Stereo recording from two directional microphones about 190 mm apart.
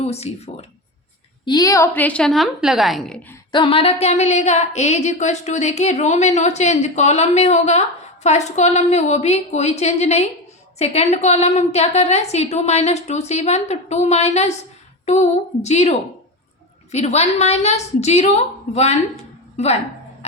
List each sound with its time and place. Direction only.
0.0 s a woman's voice: 35° left (ahead or behind)
1.5 s a woman's voice: 20° left (ahead or behind); by 3.3 s 5° left (ahead or behind)
3.5 s a woman's voice: 25° left (ahead or behind)